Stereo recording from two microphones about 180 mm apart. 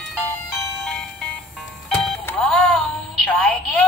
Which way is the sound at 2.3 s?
5° left (ahead or behind).